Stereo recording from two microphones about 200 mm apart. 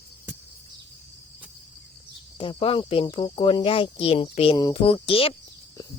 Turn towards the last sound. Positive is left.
turn(degrees=30)  # may be behind; listen again after turning